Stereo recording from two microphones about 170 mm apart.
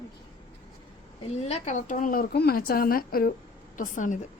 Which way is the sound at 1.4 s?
40° left (ahead or behind).